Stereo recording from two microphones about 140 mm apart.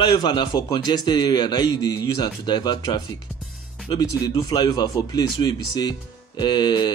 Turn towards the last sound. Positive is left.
turn(degrees=30)  # may be behind; listen again after turning